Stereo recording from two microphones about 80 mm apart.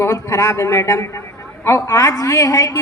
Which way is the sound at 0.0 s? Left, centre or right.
Left.